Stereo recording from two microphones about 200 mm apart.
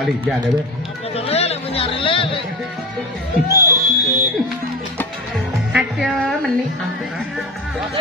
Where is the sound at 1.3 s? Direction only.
30° left (ahead or behind).